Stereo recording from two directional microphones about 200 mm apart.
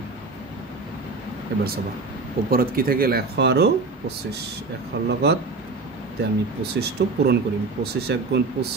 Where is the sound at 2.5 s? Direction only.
45° right (ahead or behind).